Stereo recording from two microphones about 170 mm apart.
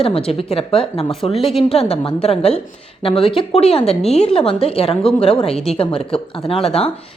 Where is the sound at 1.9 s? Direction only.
35° left (ahead or behind).